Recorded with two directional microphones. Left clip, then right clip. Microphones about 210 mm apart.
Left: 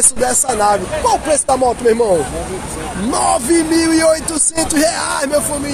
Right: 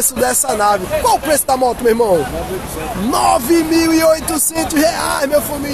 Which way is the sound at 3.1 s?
5° right (ahead or behind).